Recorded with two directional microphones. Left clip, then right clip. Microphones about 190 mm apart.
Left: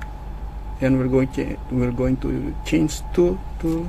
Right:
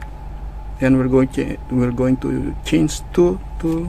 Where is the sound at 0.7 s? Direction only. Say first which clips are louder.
Right 4 dB; 20° right (ahead or behind).